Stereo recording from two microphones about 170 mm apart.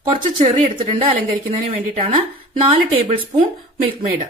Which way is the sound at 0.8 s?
35° right (ahead or behind).